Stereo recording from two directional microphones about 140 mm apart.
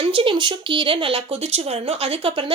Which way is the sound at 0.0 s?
40° right (ahead or behind).